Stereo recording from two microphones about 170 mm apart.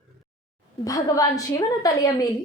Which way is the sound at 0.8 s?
20° left (ahead or behind).